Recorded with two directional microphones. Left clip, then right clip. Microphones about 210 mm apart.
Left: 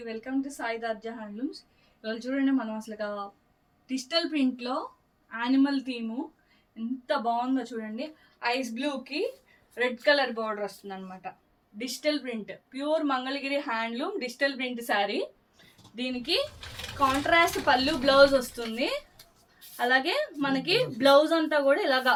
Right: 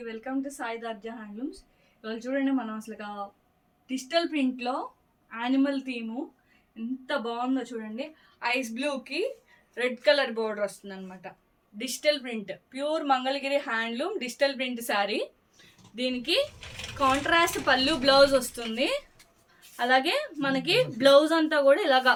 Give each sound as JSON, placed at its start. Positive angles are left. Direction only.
{"t": 0.1, "sound": "speech", "side_deg": -10}
{"t": 7.3, "sound": "a woman's voice", "side_deg": -20}